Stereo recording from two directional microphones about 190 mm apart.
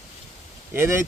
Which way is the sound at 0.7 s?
15° right (ahead or behind).